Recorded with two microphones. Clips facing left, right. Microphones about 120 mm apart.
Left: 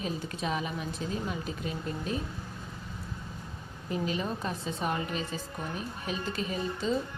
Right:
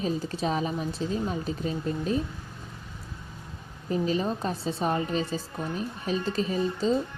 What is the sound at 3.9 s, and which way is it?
A woman's voice, 35° right (ahead or behind).